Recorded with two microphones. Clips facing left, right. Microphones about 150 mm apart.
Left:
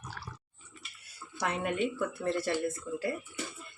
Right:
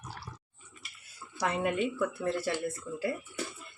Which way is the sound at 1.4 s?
Centre (ahead or behind).